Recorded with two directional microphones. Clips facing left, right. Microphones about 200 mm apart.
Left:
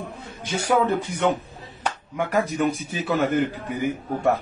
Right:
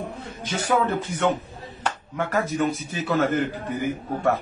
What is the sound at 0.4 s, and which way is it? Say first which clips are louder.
A man's voice: left 2 dB; 10° left (ahead or behind).